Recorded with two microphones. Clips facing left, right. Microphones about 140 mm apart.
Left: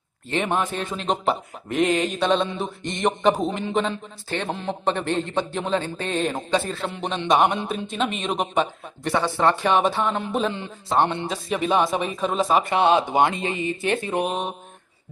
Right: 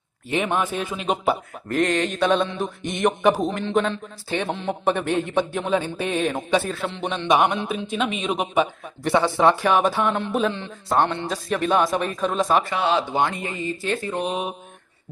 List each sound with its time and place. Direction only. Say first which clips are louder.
0.3 s a man's voice: right 1 dB; 5° right (ahead or behind)
1.6 s a man's voice: even; 5° left (ahead or behind); by 9.6 s 10° right (ahead or behind)
9.6 s speech: right 1 dB; centre (ahead or behind)
10.9 s speech: even; 15° left (ahead or behind)
11.3 s speech: right 1 dB; centre (ahead or behind)
12.6 s speech: left 3 dB; 20° left (ahead or behind)
14.3 s speech: even; 5° right (ahead or behind)